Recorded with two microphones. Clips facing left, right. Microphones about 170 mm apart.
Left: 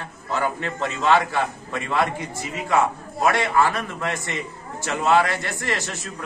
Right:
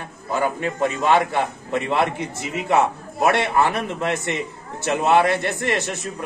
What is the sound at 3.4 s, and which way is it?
A man's voice, 20° right (ahead or behind).